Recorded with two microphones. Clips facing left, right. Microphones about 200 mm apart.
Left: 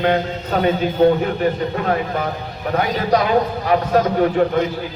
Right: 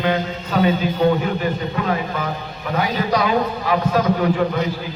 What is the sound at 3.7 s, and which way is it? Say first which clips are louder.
Speech: left 2 dB; 45° left (ahead or behind).